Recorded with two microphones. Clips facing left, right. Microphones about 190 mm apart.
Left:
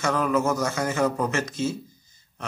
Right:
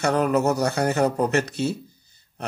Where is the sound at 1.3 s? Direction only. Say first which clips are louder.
Right 3 dB; 65° right (ahead or behind).